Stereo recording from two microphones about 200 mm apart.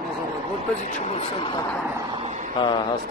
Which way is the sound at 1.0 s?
25° left (ahead or behind).